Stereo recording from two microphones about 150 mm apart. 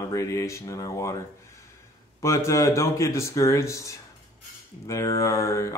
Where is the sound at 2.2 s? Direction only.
20° left (ahead or behind).